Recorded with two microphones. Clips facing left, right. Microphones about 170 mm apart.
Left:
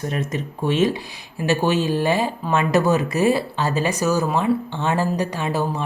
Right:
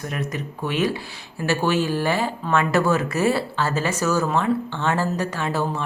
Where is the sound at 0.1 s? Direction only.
25° left (ahead or behind).